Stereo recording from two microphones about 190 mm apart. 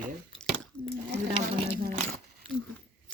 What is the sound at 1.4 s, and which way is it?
Speech, 40° right (ahead or behind).